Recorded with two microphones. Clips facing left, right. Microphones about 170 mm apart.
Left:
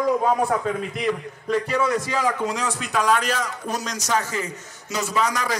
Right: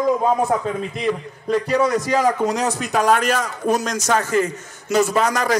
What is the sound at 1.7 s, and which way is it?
A man's voice, 40° right (ahead or behind).